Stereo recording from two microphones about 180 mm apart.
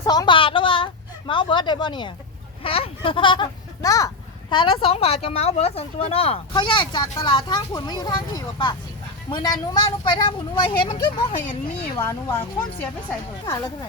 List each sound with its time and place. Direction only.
0.0 s a sound: 20° left (ahead or behind)
1.3 s a child's voice: 25° left (ahead or behind)
11.9 s speech: 15° left (ahead or behind)